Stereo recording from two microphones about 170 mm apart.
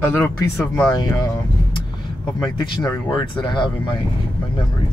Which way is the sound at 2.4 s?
25° left (ahead or behind).